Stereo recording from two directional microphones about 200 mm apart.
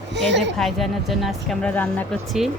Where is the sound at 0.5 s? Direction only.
Centre (ahead or behind).